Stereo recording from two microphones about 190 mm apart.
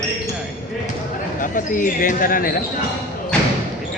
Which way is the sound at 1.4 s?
45° left (ahead or behind).